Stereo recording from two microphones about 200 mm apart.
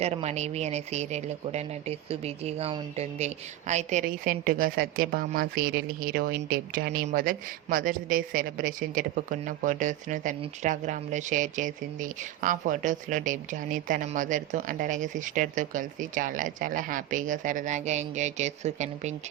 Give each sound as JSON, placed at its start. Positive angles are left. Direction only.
{"t": 0.0, "sound": "a woman's voice", "side_deg": -30}